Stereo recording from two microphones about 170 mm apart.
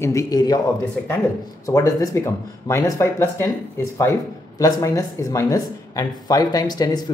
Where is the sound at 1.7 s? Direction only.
20° left (ahead or behind).